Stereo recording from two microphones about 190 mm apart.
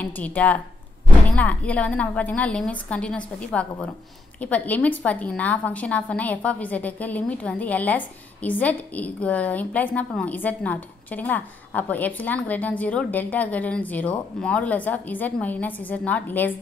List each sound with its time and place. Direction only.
0.0 s a woman's voice: 5° left (ahead or behind)